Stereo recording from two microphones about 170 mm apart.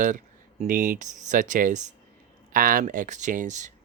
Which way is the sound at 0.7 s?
55° right (ahead or behind).